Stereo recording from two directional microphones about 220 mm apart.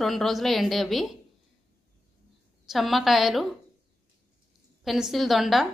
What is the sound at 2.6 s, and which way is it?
Speech, centre (ahead or behind).